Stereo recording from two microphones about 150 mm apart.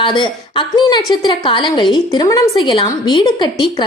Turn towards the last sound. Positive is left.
turn(degrees=30)  # may be behind; listen again after turning